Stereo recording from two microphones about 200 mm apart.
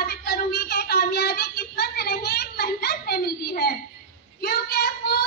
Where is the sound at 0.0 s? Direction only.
50° left (ahead or behind).